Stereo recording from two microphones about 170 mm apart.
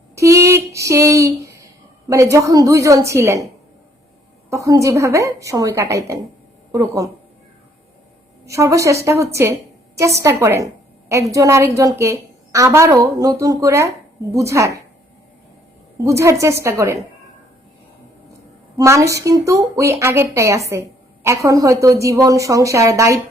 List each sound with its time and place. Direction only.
0.2 s a sound: 15° right (ahead or behind)
2.0 s a woman's voice: 20° right (ahead or behind)
4.4 s a woman's voice: 20° right (ahead or behind)
8.4 s a woman's voice: 20° right (ahead or behind)
16.0 s a woman's voice: 15° right (ahead or behind)
18.8 s a woman's voice: 20° right (ahead or behind)